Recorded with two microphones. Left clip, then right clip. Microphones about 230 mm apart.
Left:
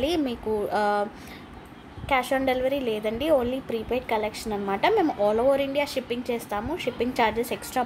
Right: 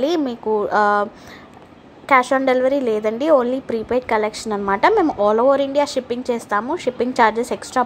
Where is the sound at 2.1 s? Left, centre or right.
Centre.